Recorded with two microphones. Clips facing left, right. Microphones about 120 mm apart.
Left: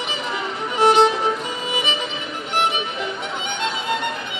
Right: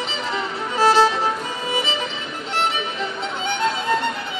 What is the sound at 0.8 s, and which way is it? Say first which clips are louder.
Music: left 1 dB; 20° left (ahead or behind).